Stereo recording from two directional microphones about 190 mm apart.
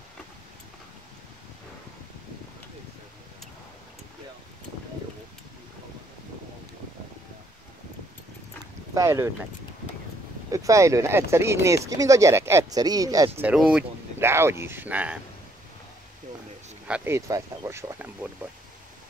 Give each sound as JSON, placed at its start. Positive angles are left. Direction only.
{"t": 8.9, "sound": "speech", "side_deg": -15}
{"t": 10.5, "sound": "speech", "side_deg": -15}
{"t": 13.4, "sound": "speech", "side_deg": -5}
{"t": 16.8, "sound": "speech", "side_deg": -10}